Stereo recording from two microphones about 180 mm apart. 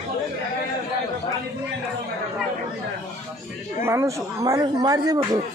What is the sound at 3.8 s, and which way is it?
Speech, 15° right (ahead or behind).